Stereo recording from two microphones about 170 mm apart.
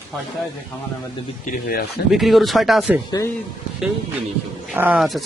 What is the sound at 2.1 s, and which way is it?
Speech, centre (ahead or behind).